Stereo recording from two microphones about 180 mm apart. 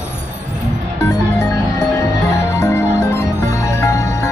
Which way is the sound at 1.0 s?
15° left (ahead or behind).